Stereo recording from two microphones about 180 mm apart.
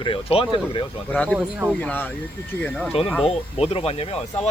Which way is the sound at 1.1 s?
5° left (ahead or behind).